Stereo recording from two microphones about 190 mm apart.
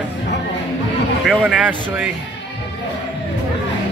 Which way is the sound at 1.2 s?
5° right (ahead or behind).